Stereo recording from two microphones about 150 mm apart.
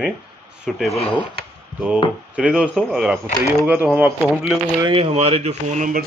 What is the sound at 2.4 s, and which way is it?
Speech, 5° right (ahead or behind).